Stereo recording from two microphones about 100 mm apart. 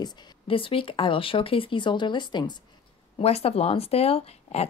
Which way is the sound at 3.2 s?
90° left.